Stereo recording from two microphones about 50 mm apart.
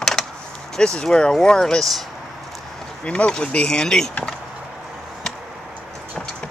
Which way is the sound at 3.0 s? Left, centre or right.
Left.